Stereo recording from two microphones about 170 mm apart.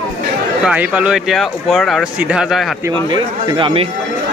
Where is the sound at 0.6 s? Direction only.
5° right (ahead or behind).